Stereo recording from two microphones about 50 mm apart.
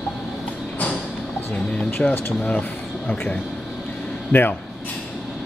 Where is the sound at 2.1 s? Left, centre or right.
Left.